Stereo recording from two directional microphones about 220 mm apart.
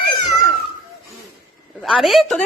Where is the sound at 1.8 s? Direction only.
Centre (ahead or behind).